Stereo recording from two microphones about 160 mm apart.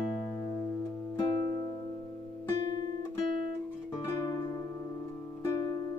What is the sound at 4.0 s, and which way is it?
Music, 20° left (ahead or behind).